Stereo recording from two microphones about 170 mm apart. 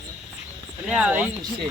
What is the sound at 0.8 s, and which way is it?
Speech, 5° right (ahead or behind).